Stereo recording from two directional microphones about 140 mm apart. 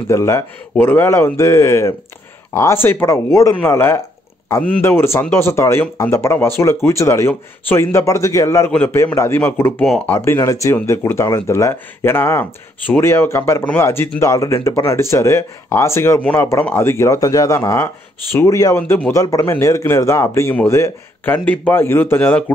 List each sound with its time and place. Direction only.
0.1 s speech: 20° left (ahead or behind)
10.1 s speech: 20° left (ahead or behind)
18.8 s speech: 10° left (ahead or behind)
19.1 s speech: 20° left (ahead or behind)